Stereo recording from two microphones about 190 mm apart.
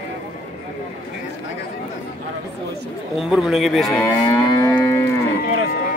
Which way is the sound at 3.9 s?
10° left (ahead or behind).